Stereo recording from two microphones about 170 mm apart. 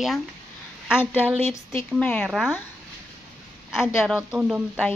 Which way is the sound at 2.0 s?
10° left (ahead or behind).